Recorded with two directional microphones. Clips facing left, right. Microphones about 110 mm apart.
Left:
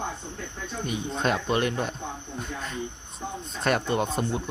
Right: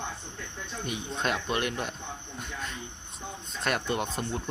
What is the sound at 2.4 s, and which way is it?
Cricket, 40° left (ahead or behind).